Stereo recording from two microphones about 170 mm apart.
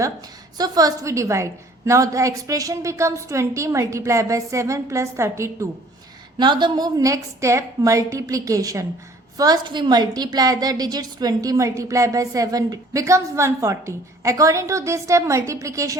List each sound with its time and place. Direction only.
0.5 s a woman's voice: 25° right (ahead or behind)
6.4 s a woman's voice: 25° right (ahead or behind)